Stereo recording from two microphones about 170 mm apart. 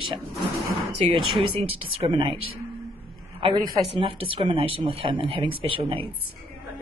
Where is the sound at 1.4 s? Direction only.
35° right (ahead or behind).